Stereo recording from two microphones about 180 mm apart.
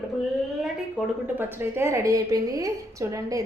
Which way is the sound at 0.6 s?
10° right (ahead or behind).